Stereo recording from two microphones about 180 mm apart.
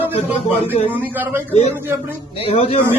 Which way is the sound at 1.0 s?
10° right (ahead or behind).